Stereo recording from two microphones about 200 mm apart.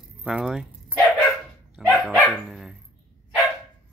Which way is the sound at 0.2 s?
5° right (ahead or behind).